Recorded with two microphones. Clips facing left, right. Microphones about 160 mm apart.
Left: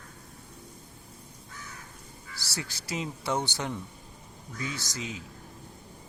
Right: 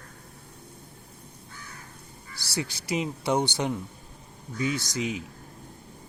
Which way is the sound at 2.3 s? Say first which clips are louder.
Right 6 dB; 15° right (ahead or behind).